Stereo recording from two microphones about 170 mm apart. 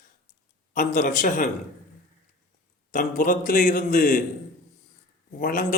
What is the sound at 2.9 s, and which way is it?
Speech, 50° left (ahead or behind).